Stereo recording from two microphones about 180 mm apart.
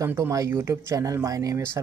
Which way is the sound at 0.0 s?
15° right (ahead or behind).